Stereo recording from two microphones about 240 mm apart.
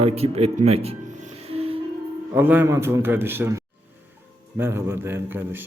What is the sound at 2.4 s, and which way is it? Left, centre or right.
A man's voice, centre.